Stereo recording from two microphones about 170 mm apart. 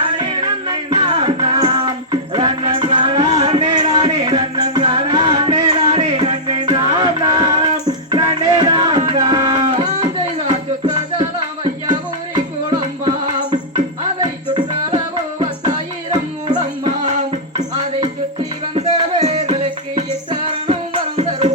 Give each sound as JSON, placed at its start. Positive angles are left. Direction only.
{"t": 0.2, "sound": "music", "side_deg": -25}
{"t": 3.7, "sound": "music", "side_deg": -25}
{"t": 13.1, "sound": "music", "side_deg": -25}
{"t": 17.6, "sound": "music", "side_deg": -40}
{"t": 20.7, "sound": "music", "side_deg": -35}